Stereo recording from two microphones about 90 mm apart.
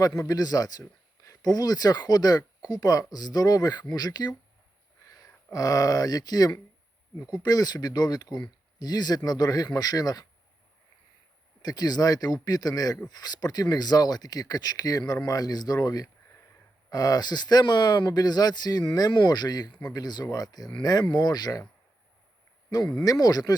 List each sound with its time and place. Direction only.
0.0 s speech: 45° left (ahead or behind)
11.6 s speech: 45° left (ahead or behind)
23.0 s speech: 45° left (ahead or behind)